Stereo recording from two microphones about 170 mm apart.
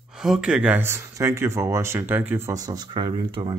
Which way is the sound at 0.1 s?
5° right (ahead or behind).